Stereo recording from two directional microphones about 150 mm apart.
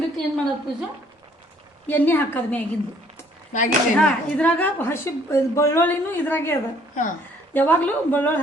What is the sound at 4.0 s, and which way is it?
A woman's voice, 10° left (ahead or behind).